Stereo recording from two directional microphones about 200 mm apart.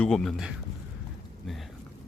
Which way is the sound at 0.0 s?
5° left (ahead or behind).